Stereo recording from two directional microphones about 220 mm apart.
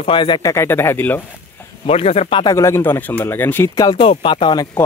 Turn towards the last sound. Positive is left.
turn(degrees=20)  # may be behind; listen again after turning